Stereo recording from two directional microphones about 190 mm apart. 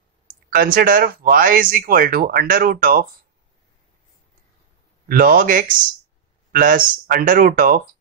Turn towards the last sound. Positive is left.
turn(degrees=-50)  # may be behind; listen again after turning